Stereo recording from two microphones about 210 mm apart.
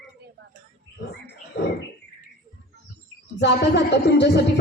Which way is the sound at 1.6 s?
50° left (ahead or behind).